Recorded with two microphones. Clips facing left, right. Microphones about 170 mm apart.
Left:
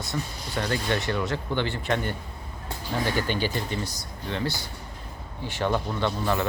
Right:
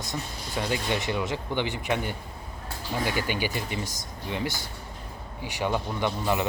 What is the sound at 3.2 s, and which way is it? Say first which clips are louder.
Speech: left 2 dB; 10° right (ahead or behind).